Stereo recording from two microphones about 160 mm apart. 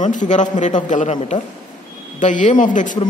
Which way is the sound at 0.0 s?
50° left (ahead or behind).